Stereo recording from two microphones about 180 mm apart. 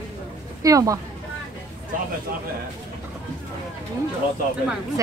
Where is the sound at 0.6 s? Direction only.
20° right (ahead or behind).